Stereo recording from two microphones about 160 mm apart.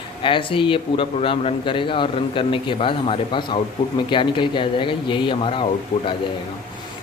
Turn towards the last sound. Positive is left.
turn(degrees=30)  # may be behind; listen again after turning